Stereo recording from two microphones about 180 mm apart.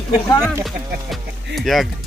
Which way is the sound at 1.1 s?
Centre (ahead or behind).